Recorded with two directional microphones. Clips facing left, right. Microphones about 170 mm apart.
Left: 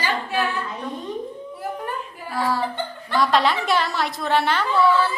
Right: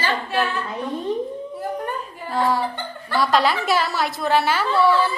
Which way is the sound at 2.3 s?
20° right (ahead or behind).